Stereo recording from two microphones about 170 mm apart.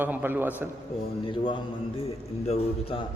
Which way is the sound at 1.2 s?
30° left (ahead or behind).